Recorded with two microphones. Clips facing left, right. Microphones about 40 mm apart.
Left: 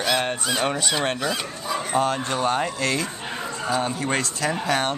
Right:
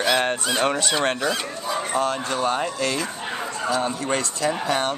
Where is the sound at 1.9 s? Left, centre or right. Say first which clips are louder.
Left 2 dB; centre.